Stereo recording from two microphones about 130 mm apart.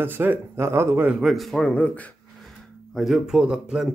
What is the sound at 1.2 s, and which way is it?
Speech, centre (ahead or behind).